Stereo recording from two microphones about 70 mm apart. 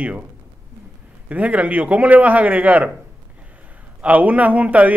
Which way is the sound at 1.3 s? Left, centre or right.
Centre.